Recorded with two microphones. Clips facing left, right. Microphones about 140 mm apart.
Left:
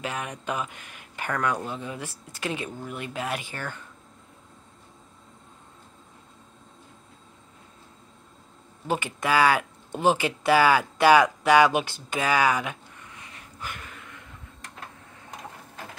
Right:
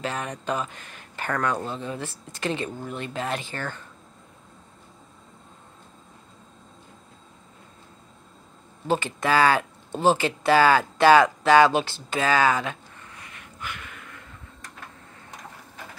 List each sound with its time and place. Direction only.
0.0 s speech: 10° left (ahead or behind)
8.8 s speech: 15° left (ahead or behind)
13.2 s a sound: 35° left (ahead or behind)